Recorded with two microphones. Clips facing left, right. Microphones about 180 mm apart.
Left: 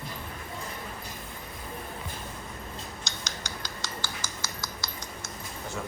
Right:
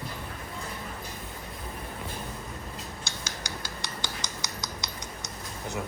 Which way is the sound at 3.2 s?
10° right (ahead or behind).